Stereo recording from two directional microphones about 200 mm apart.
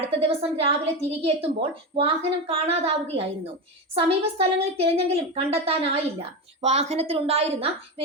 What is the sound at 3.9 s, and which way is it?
A woman's voice, 30° right (ahead or behind).